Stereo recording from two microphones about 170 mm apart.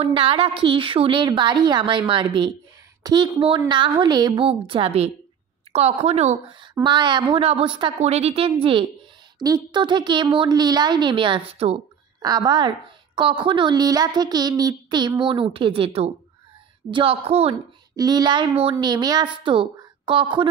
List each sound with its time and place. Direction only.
0.0 s a woman's voice: 30° right (ahead or behind)
6.8 s a woman's voice: 25° right (ahead or behind)
12.2 s a woman's voice: 25° right (ahead or behind)
17.9 s a woman's voice: 25° right (ahead or behind)